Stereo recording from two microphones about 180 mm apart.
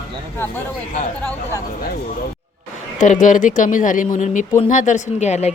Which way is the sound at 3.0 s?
45° left (ahead or behind).